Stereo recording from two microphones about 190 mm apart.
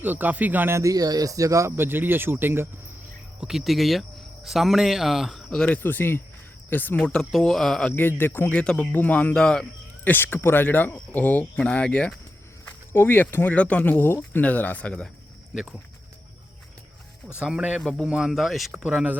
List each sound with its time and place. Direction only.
0.0 s speech: 10° right (ahead or behind)
3.4 s speech: centre (ahead or behind)
17.4 s speech: 5° right (ahead or behind)